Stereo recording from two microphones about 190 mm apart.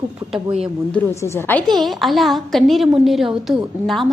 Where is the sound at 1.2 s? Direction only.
15° left (ahead or behind).